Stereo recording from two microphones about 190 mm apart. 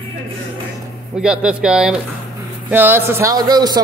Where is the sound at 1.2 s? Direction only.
5° right (ahead or behind).